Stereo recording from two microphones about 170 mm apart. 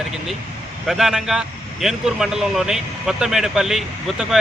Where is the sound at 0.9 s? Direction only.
Centre (ahead or behind).